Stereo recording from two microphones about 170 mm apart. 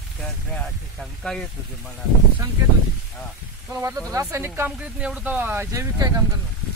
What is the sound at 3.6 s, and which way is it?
Speech, 20° right (ahead or behind).